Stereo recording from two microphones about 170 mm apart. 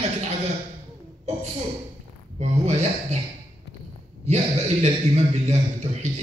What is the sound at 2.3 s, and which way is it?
Speech, 40° right (ahead or behind).